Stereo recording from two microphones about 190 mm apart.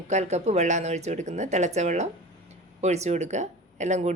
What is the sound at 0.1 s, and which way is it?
A woman's voice, 35° right (ahead or behind).